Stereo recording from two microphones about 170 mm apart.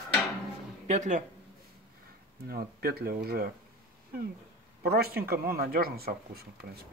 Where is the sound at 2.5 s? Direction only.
65° right (ahead or behind).